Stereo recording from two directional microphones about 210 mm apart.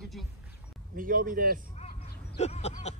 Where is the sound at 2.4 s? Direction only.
30° left (ahead or behind).